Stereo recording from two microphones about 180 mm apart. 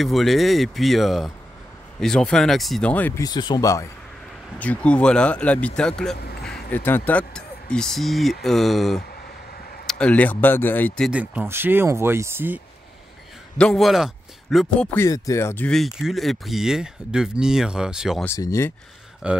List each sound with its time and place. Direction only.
0.0 s speech: centre (ahead or behind); by 3.8 s 20° left (ahead or behind)
4.6 s speech: 5° left (ahead or behind)
11.1 s speech: 5° right (ahead or behind)
13.6 s a man's voice: centre (ahead or behind)
15.0 s speech: 20° left (ahead or behind); by 18.2 s 5° right (ahead or behind)
18.2 s speech: 15° left (ahead or behind)
19.2 s speech: 5° right (ahead or behind)